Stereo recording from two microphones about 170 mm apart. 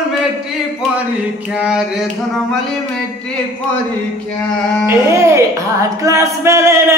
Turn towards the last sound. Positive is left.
turn(degrees=-15)  # may be behind; listen again after turning